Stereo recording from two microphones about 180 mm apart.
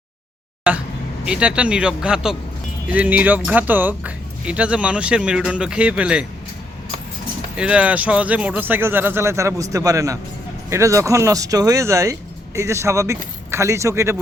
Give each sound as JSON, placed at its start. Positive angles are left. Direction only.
{"t": 0.7, "sound": "speech", "side_deg": -5}
{"t": 7.5, "sound": "speech", "side_deg": -5}